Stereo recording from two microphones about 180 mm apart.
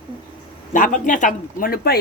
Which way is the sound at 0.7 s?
45° left (ahead or behind).